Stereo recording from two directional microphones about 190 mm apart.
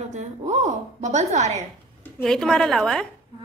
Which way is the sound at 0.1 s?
40° right (ahead or behind).